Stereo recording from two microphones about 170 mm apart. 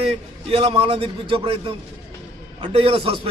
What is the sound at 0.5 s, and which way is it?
A man's voice, 35° right (ahead or behind).